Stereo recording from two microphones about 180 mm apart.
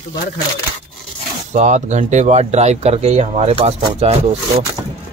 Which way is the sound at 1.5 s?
40° right (ahead or behind).